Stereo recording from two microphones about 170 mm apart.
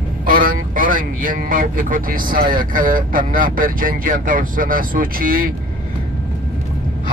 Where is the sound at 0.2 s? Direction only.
55° right (ahead or behind).